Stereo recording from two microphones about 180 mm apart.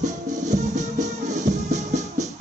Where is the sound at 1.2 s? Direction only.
40° right (ahead or behind).